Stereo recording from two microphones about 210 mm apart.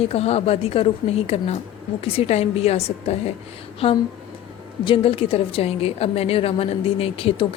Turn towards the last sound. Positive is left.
turn(degrees=25)  # may be behind; listen again after turning